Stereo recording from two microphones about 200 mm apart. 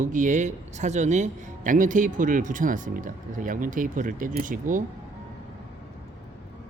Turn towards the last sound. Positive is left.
turn(degrees=-40)  # may be behind; listen again after turning